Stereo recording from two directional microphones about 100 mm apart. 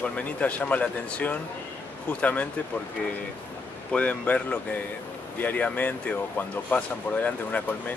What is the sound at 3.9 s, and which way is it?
A man's voice, 15° left (ahead or behind).